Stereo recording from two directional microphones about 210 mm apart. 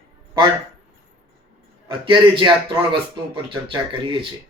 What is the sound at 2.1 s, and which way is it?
Speech, 25° right (ahead or behind).